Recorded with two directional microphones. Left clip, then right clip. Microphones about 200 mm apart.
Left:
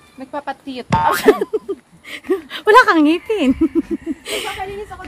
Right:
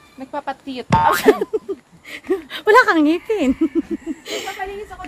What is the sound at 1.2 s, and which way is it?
A woman's voice, 15° left (ahead or behind).